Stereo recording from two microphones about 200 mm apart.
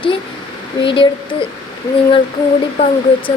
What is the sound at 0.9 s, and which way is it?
Speech, 25° left (ahead or behind).